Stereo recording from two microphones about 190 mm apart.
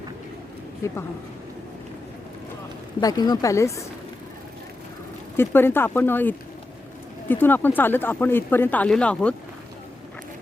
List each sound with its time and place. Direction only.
3.0 s speech: 20° left (ahead or behind)
5.4 s speech: 10° left (ahead or behind)